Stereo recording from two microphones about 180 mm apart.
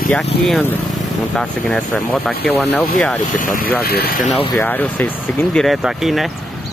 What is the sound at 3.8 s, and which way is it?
Speech, 60° left (ahead or behind).